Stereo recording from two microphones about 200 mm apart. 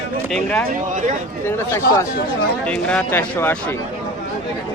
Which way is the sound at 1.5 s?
15° left (ahead or behind).